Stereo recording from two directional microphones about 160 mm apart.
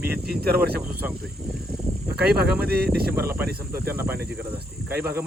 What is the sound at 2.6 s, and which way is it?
Speech, 80° right.